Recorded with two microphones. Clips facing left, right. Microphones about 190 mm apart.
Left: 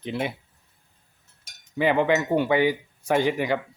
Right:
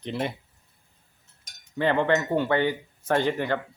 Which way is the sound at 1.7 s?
10° left (ahead or behind).